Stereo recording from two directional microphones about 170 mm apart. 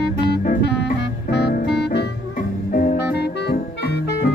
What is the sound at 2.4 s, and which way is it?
Music, 55° left (ahead or behind).